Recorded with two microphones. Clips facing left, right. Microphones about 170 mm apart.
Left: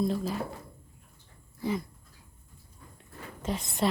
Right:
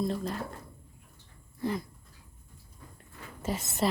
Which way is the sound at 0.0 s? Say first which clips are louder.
Left 2 dB; centre (ahead or behind).